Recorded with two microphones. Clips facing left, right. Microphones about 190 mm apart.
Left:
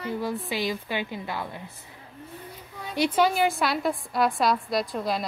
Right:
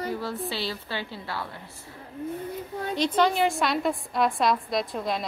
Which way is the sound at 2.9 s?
10° left (ahead or behind).